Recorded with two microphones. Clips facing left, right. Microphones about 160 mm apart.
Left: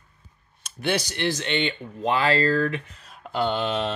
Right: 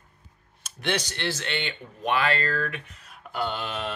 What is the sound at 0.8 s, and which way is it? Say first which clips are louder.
Speech: left 4 dB; 10° left (ahead or behind).